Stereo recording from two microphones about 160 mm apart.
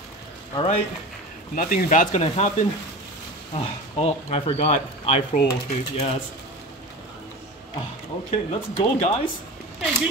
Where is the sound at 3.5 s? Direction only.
35° left (ahead or behind).